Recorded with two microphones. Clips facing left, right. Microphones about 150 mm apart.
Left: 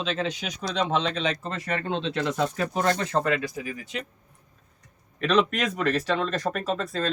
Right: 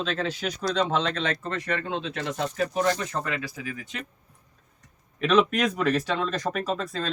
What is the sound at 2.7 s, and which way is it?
Speech, 60° left (ahead or behind).